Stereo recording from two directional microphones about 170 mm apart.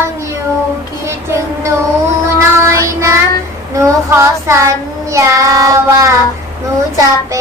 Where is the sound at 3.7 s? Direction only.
15° right (ahead or behind).